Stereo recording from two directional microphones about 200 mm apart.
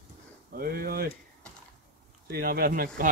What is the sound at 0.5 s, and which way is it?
Speech, 50° right (ahead or behind).